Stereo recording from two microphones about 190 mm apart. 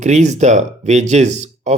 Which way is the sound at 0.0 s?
40° right (ahead or behind).